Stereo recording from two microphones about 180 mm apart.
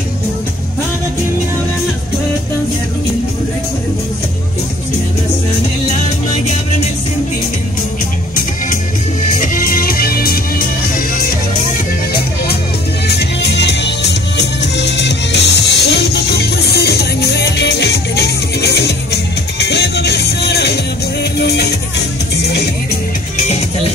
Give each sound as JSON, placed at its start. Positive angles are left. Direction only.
{"t": 9.4, "sound": "music", "side_deg": 50}
{"t": 13.1, "sound": "music", "side_deg": 65}
{"t": 23.3, "sound": "music", "side_deg": 40}